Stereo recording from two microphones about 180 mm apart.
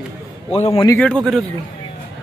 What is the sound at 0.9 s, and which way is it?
Speech, 5° left (ahead or behind).